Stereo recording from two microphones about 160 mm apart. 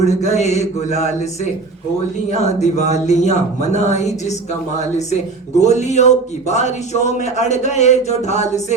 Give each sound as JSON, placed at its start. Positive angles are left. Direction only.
{"t": 0.0, "sound": "a man's voice", "side_deg": 45}
{"t": 2.4, "sound": "a man's voice", "side_deg": 45}
{"t": 5.5, "sound": "a man's voice", "side_deg": 45}